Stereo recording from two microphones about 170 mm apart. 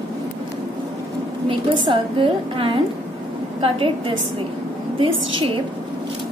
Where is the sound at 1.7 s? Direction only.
30° right (ahead or behind).